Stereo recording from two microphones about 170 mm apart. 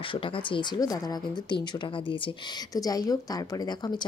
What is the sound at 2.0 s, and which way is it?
A woman's voice, 25° left (ahead or behind).